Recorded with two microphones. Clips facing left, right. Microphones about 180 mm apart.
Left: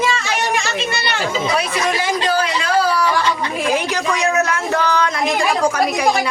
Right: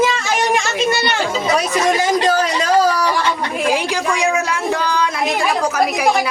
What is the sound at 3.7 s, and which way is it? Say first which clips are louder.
Speech: even; 10° right (ahead or behind).